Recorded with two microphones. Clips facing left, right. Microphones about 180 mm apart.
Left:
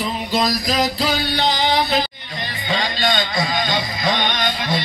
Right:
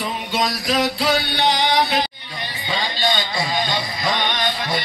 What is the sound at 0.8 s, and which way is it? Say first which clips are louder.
Music: right 1 dB; 65° right (ahead or behind).